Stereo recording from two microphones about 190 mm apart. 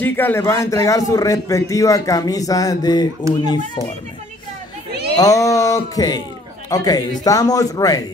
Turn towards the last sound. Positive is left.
turn(degrees=20)  # may be behind; listen again after turning